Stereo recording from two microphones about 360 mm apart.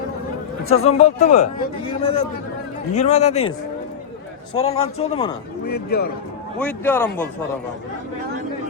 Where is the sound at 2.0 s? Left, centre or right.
Centre.